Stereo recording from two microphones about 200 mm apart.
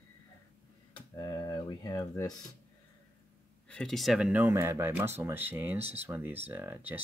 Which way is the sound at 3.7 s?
5° left (ahead or behind).